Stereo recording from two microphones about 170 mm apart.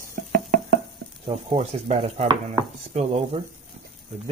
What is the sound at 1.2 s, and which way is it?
Sizzle, 35° right (ahead or behind).